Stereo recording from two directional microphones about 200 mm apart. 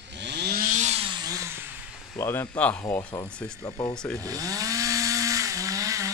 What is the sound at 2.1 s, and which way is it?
Speech, 10° left (ahead or behind).